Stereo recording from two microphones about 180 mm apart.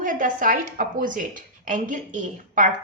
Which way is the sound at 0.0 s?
45° right (ahead or behind).